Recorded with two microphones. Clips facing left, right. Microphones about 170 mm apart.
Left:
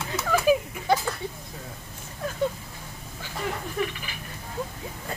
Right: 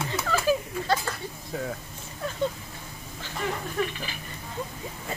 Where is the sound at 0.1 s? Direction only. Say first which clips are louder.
Left 4 dB; 15° left (ahead or behind).